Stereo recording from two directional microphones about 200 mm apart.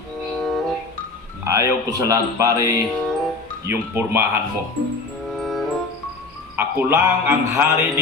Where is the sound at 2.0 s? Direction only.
15° right (ahead or behind).